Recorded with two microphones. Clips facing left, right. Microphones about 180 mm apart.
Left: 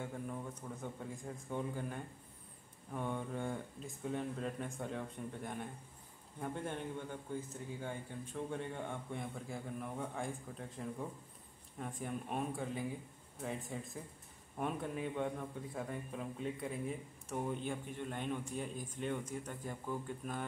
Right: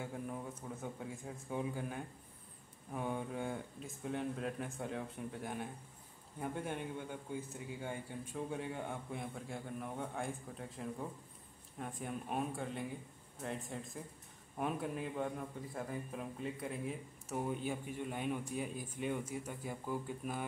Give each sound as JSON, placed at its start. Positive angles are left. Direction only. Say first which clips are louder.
{"t": 0.0, "sound": "a man's voice", "louder": "even", "side_deg": -5}